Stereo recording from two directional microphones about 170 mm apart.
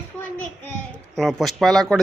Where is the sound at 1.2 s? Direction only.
Centre (ahead or behind).